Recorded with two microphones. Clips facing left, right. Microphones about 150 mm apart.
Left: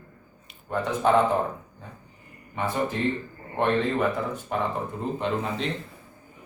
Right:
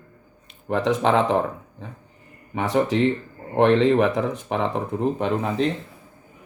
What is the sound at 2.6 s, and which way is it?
Speech, 90° right.